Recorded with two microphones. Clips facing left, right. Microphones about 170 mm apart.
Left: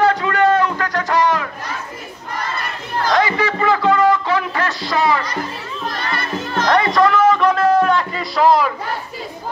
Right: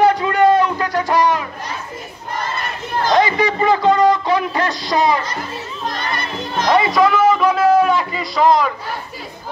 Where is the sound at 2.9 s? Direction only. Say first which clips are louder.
Right 2 dB; 20° right (ahead or behind).